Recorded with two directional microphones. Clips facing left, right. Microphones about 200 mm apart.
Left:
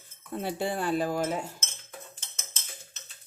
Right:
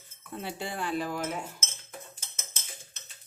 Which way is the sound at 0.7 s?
40° left (ahead or behind).